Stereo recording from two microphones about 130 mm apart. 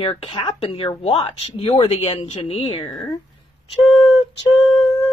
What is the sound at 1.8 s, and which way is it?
Speech, 55° left (ahead or behind).